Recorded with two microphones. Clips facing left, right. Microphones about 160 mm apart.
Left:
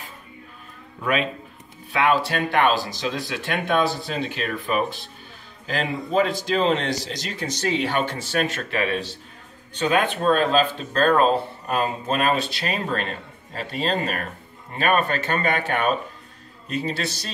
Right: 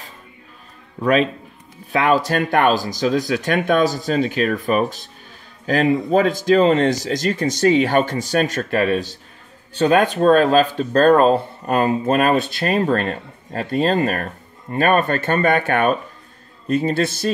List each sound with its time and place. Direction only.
1.9 s speech: 40° right (ahead or behind)
11.8 s speech: 55° right (ahead or behind)